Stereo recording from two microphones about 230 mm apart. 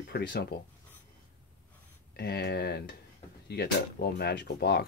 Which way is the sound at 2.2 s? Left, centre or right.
Left.